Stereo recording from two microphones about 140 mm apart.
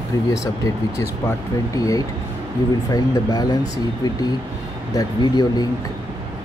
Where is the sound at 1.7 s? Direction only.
25° left (ahead or behind).